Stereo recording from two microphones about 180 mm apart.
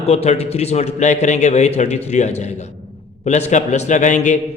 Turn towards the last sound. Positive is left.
turn(degrees=45)  # may be behind; listen again after turning